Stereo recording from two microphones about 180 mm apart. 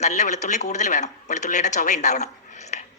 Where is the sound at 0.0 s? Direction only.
40° left (ahead or behind).